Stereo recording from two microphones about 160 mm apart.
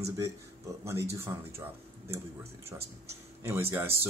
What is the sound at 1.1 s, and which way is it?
Speech, 15° right (ahead or behind).